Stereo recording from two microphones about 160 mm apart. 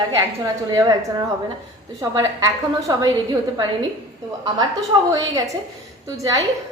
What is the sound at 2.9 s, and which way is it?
Speech, 25° right (ahead or behind).